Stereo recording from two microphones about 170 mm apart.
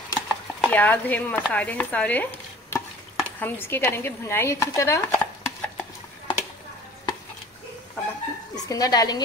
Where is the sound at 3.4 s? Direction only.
15° left (ahead or behind).